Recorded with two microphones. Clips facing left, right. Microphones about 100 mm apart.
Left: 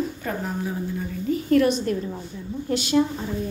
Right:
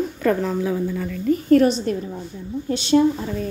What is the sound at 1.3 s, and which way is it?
Speech, 40° right (ahead or behind).